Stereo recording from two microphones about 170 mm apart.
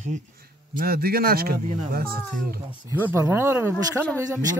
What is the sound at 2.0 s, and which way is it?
Speech, 65° right (ahead or behind).